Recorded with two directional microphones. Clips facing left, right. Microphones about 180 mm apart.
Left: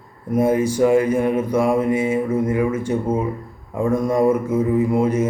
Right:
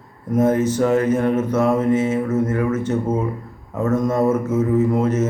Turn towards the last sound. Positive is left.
turn(degrees=10)  # may be behind; listen again after turning